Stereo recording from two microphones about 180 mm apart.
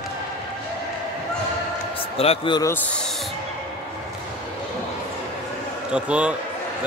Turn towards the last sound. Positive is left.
turn(degrees=-5)  # may be behind; listen again after turning